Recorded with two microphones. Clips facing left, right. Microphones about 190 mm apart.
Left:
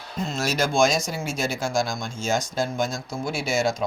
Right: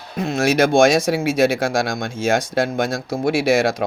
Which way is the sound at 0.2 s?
60° right (ahead or behind).